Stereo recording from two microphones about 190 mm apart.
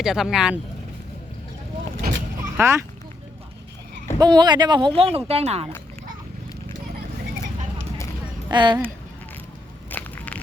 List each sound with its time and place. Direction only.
0.0 s speech: centre (ahead or behind)
2.6 s speech: 15° right (ahead or behind)
4.2 s speech: 25° right (ahead or behind)
8.4 s speech: 25° right (ahead or behind)
9.9 s a sound: 10° left (ahead or behind)